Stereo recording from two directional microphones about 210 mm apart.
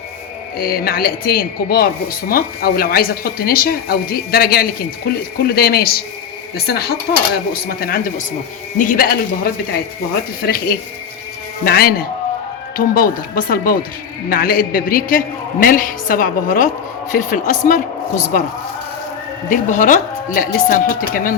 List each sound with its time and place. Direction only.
0.6 s a woman's voice: 45° left (ahead or behind)
19.5 s speech: 40° left (ahead or behind)